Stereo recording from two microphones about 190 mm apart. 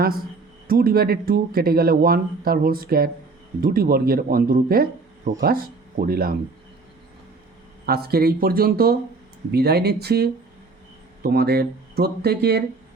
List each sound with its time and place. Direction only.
0.7 s speech: 50° right (ahead or behind)
7.9 s speech: 55° right (ahead or behind)